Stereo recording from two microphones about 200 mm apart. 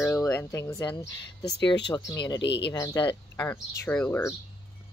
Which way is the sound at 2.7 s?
15° left (ahead or behind).